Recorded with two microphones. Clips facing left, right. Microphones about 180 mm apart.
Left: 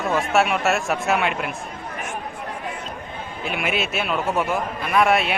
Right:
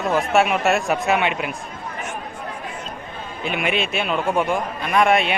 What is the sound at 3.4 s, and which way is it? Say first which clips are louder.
A man's voice: right 2 dB; centre (ahead or behind).